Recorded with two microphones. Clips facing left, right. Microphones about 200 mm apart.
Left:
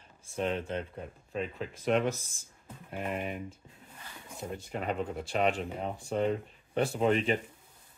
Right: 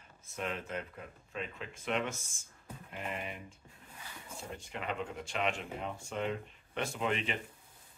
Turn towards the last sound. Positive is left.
turn(degrees=40)  # may be behind; listen again after turning